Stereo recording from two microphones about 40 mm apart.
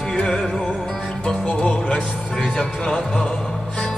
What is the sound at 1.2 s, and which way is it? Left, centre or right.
Music, left.